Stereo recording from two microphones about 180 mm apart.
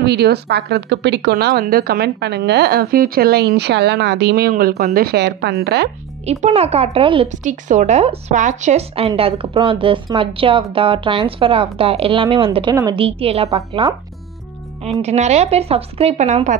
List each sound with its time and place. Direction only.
0.0 s a woman's voice: 65° right (ahead or behind)
6.4 s speech: 35° right (ahead or behind)
7.4 s a woman's voice: 40° right (ahead or behind)